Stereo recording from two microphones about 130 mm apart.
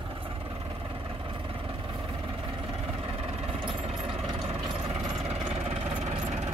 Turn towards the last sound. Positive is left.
turn(degrees=-55)  # may be behind; listen again after turning